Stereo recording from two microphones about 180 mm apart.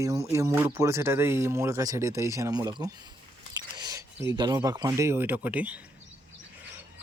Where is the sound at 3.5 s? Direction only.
20° right (ahead or behind).